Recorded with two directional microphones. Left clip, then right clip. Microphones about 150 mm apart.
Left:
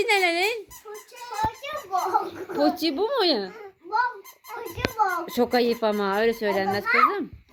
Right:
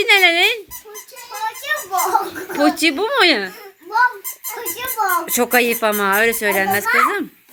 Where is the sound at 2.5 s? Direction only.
30° right (ahead or behind).